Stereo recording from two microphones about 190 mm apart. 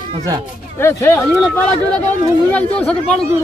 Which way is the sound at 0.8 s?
10° left (ahead or behind).